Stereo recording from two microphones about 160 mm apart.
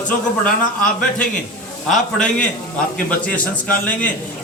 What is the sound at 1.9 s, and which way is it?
A man's voice, 5° left (ahead or behind).